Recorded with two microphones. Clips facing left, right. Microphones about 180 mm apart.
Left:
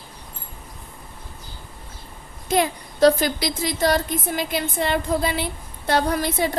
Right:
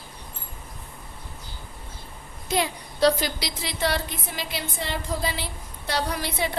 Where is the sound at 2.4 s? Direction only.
50° left (ahead or behind).